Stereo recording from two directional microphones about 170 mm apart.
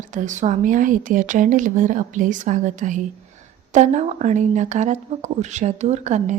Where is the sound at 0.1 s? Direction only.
45° right (ahead or behind).